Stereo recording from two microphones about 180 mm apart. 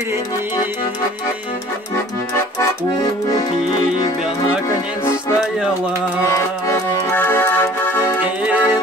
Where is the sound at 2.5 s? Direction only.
20° left (ahead or behind).